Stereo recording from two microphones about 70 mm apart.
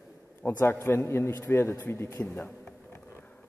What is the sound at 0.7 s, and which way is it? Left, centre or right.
A man's voice, left.